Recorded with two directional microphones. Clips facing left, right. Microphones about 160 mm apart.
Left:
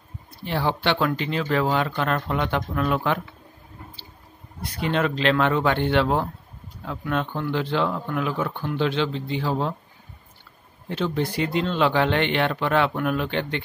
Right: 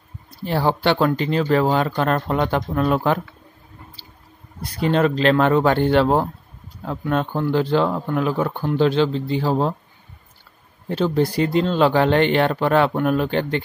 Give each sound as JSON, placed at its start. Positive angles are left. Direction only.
{"t": 0.5, "sound": "speech", "side_deg": -40}
{"t": 4.6, "sound": "speech", "side_deg": -40}
{"t": 10.9, "sound": "speech", "side_deg": -40}